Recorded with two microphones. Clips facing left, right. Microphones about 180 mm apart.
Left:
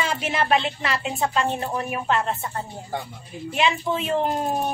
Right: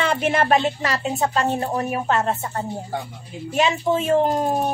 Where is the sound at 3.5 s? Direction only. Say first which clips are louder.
Right 3 dB; 40° right (ahead or behind).